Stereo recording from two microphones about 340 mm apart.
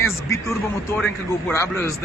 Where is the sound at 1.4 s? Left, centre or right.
Centre.